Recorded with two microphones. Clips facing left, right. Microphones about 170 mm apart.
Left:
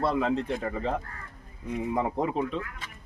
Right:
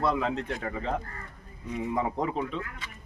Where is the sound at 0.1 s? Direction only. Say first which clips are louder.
Left 2 dB; centre (ahead or behind).